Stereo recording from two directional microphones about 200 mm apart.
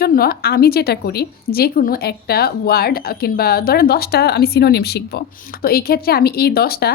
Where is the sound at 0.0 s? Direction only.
50° left (ahead or behind).